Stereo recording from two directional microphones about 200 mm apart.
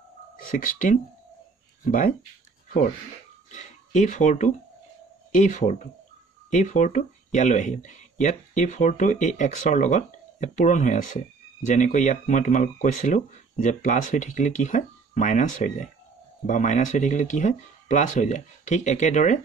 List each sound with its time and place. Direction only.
0.4 s speech: 45° left (ahead or behind)
3.5 s speech: 40° left (ahead or behind)